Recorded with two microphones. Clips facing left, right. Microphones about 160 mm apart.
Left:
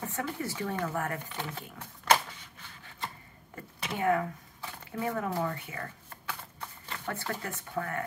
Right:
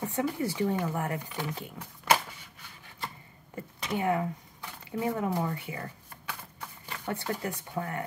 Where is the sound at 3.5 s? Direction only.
20° right (ahead or behind).